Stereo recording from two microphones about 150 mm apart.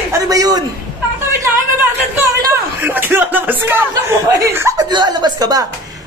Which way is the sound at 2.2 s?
15° right (ahead or behind).